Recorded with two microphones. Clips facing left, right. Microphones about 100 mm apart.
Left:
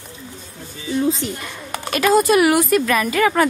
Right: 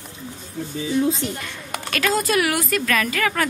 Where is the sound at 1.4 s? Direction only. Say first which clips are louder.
Left 2 dB; 15° left (ahead or behind).